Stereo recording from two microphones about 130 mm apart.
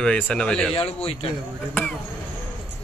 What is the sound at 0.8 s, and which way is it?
Speech, 50° left (ahead or behind).